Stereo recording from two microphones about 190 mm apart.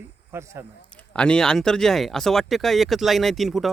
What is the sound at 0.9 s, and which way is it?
Speech, 5° left (ahead or behind).